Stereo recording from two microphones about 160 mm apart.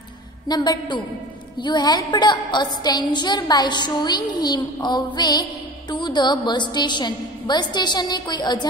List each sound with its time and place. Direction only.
0.5 s music: 25° left (ahead or behind)